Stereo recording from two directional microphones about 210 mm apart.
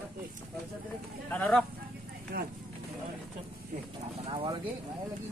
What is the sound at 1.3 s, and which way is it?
Speech, 5° left (ahead or behind).